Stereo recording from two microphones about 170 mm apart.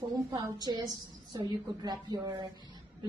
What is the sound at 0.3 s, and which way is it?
A woman's voice, 25° right (ahead or behind).